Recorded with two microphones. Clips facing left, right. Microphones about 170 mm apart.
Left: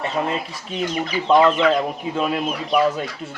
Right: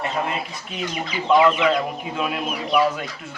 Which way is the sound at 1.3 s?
30° left (ahead or behind).